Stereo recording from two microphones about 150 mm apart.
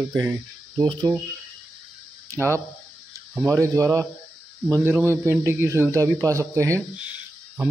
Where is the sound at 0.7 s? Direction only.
25° right (ahead or behind).